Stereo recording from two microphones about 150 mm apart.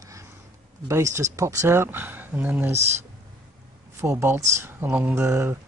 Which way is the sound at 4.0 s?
15° right (ahead or behind).